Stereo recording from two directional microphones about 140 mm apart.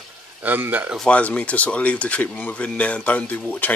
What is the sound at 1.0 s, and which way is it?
Speech, 10° left (ahead or behind).